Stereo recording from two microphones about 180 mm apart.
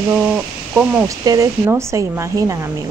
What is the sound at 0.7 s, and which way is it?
A woman's voice, 20° right (ahead or behind).